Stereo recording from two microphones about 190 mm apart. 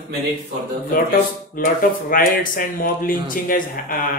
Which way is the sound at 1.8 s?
50° left (ahead or behind).